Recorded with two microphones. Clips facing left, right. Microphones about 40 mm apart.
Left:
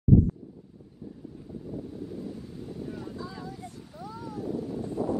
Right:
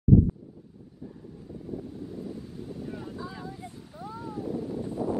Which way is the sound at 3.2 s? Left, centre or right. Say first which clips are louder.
Even; centre.